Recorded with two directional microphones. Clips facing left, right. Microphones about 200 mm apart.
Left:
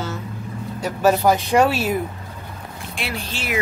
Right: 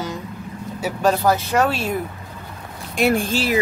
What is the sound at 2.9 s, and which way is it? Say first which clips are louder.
Speech: right 12 dB; 45° right (ahead or behind).